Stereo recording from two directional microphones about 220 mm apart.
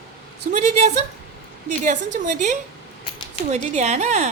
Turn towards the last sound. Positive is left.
turn(degrees=-30)  # may be behind; listen again after turning